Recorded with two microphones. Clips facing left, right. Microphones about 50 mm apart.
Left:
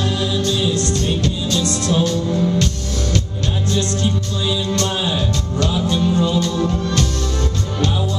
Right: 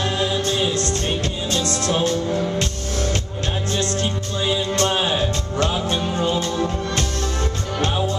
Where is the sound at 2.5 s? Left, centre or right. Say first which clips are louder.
Left 3 dB; right.